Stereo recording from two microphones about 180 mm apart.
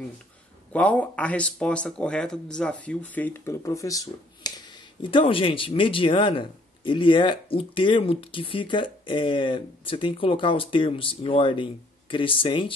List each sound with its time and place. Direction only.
0.7 s speech: 5° left (ahead or behind); by 12.7 s 30° left (ahead or behind)